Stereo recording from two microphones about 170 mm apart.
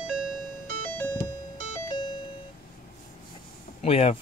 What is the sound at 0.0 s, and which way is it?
Music, 5° right (ahead or behind).